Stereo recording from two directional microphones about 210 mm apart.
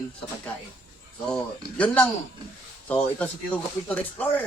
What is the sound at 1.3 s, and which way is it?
Speech, 5° left (ahead or behind).